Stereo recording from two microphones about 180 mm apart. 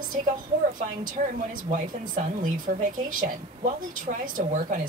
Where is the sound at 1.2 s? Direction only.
45° right (ahead or behind).